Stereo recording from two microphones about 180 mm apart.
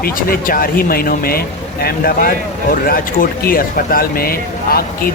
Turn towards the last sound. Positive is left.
turn(degrees=55)  # may be behind; listen again after turning